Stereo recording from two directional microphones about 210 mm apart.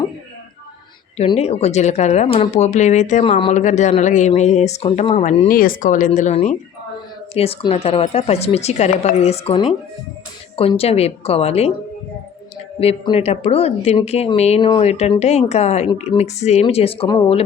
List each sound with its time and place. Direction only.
1.4 s speech: 30° left (ahead or behind)
12.8 s speech: 30° left (ahead or behind)